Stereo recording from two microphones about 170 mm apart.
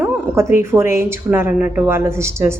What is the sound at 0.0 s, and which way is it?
A woman's voice, 15° right (ahead or behind).